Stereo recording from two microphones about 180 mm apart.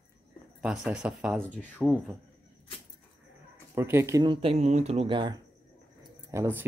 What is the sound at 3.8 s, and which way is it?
Speech, 15° right (ahead or behind).